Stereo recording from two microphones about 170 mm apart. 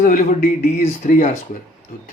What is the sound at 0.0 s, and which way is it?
Speech, 50° left (ahead or behind).